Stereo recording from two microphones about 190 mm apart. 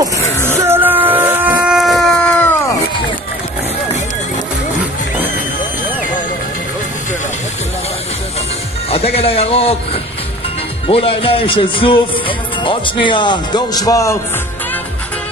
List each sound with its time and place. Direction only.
0.0 s music: 15° right (ahead or behind); by 2.5 s 5° left (ahead or behind)
8.9 s a man's voice: 30° left (ahead or behind)
10.9 s music: 30° left (ahead or behind)